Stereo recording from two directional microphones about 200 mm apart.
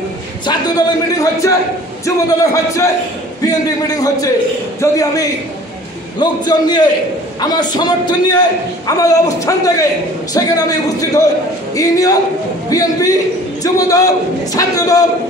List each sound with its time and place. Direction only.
0.5 s a man's voice: 15° left (ahead or behind)